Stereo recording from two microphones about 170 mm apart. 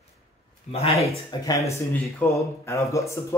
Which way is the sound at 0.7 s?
35° left (ahead or behind).